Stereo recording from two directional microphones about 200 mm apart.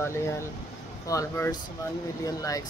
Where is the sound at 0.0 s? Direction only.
15° left (ahead or behind).